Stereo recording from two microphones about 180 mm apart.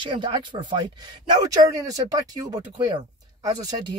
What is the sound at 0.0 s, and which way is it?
Speech, 25° right (ahead or behind).